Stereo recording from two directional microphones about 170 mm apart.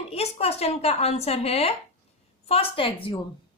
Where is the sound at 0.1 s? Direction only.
35° left (ahead or behind).